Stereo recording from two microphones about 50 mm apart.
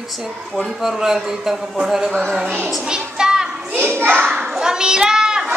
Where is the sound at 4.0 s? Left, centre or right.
Right.